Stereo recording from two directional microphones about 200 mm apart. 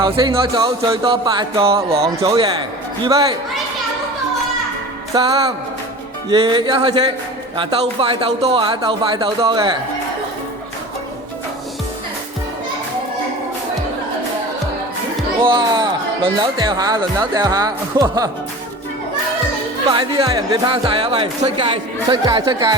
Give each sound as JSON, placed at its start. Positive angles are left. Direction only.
{"t": 0.0, "sound": "speech", "side_deg": -25}
{"t": 2.1, "sound": "speech", "side_deg": -15}
{"t": 5.1, "sound": "speech", "side_deg": -20}
{"t": 15.4, "sound": "speech", "side_deg": -25}
{"t": 19.9, "sound": "speech", "side_deg": -25}